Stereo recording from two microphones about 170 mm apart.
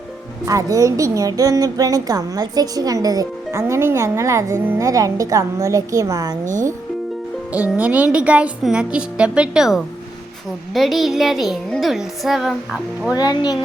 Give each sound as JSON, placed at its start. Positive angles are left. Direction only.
{"t": 0.4, "sound": "a woman's voice", "side_deg": -20}
{"t": 6.4, "sound": "speech", "side_deg": -50}
{"t": 7.5, "sound": "a woman's voice", "side_deg": -10}
{"t": 13.1, "sound": "speech", "side_deg": 25}